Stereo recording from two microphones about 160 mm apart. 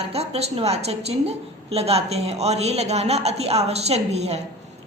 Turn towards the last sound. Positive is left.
turn(degrees=-40)  # may be behind; listen again after turning